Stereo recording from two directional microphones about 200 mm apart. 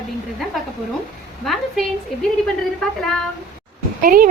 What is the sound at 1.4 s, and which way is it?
Speech, centre (ahead or behind).